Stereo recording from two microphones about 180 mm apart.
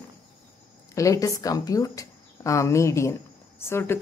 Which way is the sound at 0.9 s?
20° left (ahead or behind).